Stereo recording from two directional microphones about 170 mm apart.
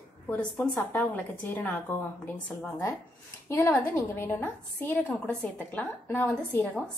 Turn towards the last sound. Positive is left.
turn(degrees=5)  # may be behind; listen again after turning